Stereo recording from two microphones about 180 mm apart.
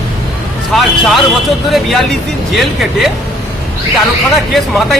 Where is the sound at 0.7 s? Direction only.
Centre (ahead or behind).